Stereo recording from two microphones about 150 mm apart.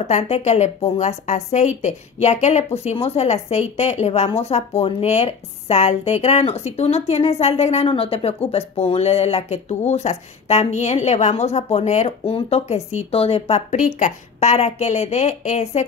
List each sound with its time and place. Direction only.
0.0 s speech: 50° left (ahead or behind)